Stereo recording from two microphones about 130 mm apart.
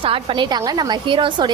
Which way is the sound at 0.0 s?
45° right (ahead or behind).